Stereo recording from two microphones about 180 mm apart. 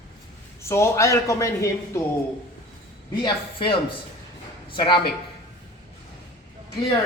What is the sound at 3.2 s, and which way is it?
Speech, 30° left (ahead or behind).